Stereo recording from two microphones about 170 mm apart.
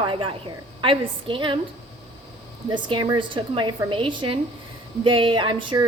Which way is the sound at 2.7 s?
25° right (ahead or behind).